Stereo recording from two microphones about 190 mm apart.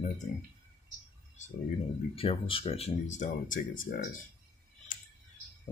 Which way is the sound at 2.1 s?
30° left (ahead or behind).